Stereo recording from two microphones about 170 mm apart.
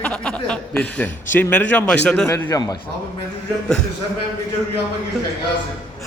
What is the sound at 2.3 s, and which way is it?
Speech, 20° left (ahead or behind).